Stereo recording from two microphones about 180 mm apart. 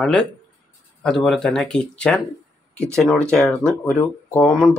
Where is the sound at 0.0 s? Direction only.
5° left (ahead or behind).